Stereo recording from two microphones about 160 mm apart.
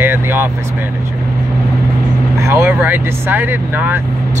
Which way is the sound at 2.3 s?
20° right (ahead or behind).